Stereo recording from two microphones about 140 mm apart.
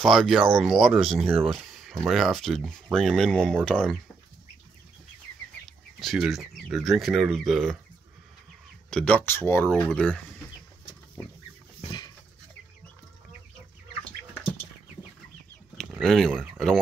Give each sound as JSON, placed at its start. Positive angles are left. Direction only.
{"t": 0.0, "sound": "speech", "side_deg": 0}
{"t": 5.9, "sound": "speech", "side_deg": 0}
{"t": 8.9, "sound": "speech", "side_deg": 10}
{"t": 9.7, "sound": "speech", "side_deg": 5}
{"t": 11.8, "sound": "a sound", "side_deg": 30}
{"t": 16.0, "sound": "speech", "side_deg": 0}